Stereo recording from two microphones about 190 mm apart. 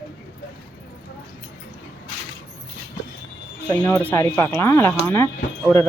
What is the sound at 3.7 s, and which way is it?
Speech, 15° left (ahead or behind).